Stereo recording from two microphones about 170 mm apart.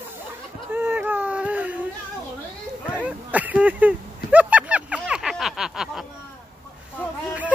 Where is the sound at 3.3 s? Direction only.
10° right (ahead or behind).